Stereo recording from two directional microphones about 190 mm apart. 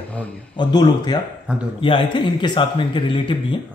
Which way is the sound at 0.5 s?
20° left (ahead or behind).